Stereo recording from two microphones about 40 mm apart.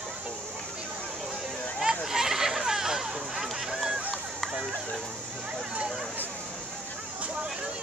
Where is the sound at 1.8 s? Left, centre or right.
Centre.